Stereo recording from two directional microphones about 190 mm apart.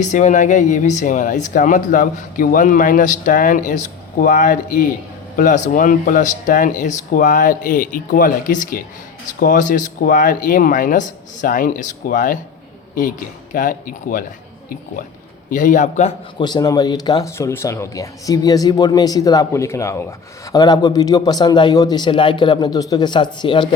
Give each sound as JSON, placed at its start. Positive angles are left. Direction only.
{"t": 0.0, "sound": "speech", "side_deg": 40}
{"t": 15.4, "sound": "speech", "side_deg": 45}
{"t": 16.4, "sound": "speech", "side_deg": 20}